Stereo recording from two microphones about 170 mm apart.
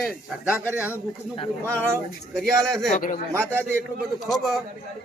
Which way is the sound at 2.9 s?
50° left (ahead or behind).